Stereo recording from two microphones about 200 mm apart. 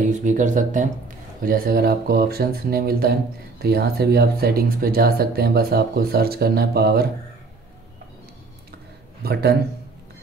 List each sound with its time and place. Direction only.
0.0 s speech: 40° right (ahead or behind)
9.2 s speech: 50° right (ahead or behind)